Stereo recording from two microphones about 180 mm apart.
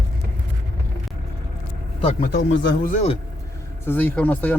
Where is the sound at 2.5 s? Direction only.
75° left (ahead or behind).